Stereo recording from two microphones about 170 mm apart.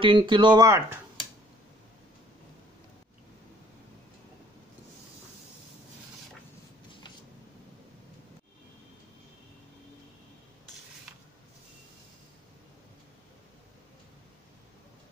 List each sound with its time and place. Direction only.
0.0 s speech: 30° right (ahead or behind)